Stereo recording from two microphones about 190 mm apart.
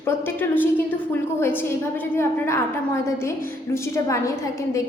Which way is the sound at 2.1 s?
15° left (ahead or behind).